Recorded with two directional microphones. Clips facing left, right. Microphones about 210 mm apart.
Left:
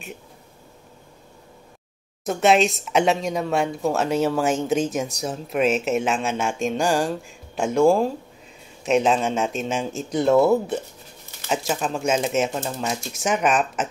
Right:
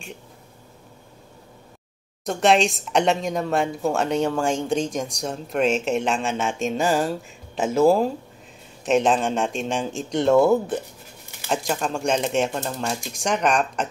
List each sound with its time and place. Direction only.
2.2 s speech: centre (ahead or behind)